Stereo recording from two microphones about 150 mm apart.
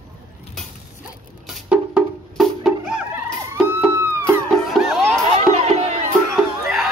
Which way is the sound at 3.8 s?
15° right (ahead or behind).